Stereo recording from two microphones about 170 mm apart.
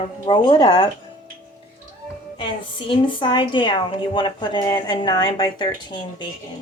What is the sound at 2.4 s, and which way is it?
A woman's voice, 30° left (ahead or behind).